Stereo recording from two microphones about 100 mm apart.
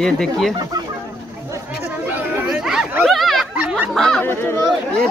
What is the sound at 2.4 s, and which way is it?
Chatter, 5° right (ahead or behind).